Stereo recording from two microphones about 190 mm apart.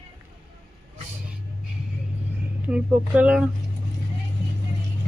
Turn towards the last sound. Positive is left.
turn(degrees=-5)  # may be behind; listen again after turning